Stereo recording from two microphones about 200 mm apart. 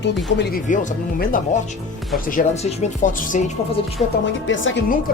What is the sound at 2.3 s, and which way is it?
Speech, 35° left (ahead or behind).